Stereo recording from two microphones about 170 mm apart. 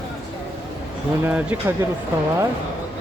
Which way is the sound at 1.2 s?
10° right (ahead or behind).